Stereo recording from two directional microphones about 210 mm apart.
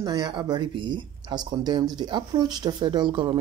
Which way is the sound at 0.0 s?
20° right (ahead or behind).